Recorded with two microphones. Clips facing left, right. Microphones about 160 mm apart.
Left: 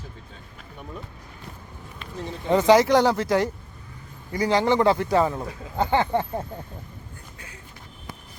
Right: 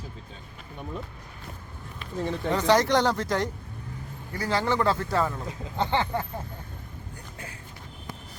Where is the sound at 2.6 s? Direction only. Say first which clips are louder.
Left 6 dB; 10° left (ahead or behind).